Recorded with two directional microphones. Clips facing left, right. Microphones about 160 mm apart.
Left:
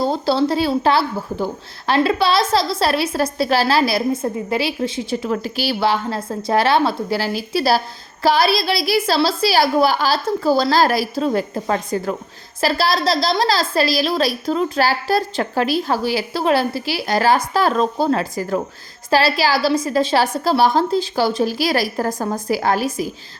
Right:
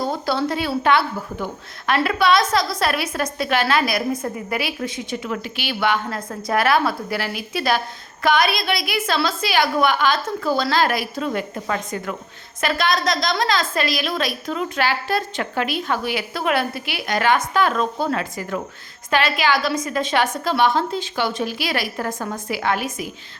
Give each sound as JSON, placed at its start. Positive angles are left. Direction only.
{"t": 0.0, "sound": "a woman's voice", "side_deg": 30}